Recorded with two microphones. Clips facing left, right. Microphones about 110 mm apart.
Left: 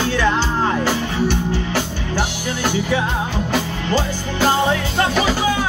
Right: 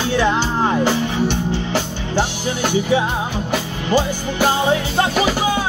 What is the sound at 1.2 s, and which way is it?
Music, 20° right (ahead or behind).